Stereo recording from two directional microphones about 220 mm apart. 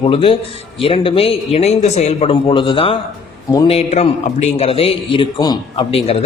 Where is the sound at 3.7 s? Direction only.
30° left (ahead or behind).